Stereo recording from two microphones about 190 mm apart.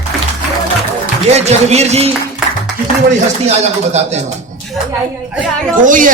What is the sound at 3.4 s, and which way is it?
Speech, 35° right (ahead or behind).